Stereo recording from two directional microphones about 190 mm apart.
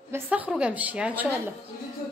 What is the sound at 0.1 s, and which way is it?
A woman's voice, 10° right (ahead or behind).